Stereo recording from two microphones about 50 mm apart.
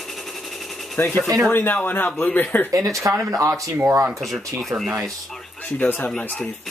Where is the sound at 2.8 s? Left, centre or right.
Right.